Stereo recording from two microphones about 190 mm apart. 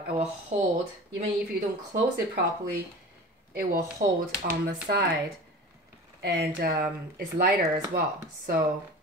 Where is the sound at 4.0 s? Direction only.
45° right (ahead or behind).